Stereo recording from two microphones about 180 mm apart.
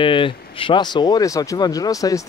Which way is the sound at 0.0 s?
30° left (ahead or behind).